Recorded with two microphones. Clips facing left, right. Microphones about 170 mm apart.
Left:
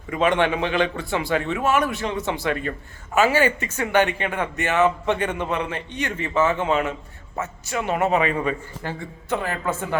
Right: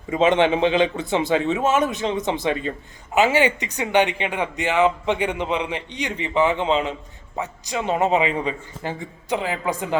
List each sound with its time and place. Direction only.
0.1 s a man's voice: 25° right (ahead or behind)